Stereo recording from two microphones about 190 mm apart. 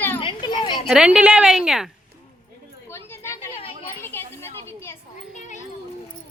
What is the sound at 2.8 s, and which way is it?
Chatter, 15° left (ahead or behind).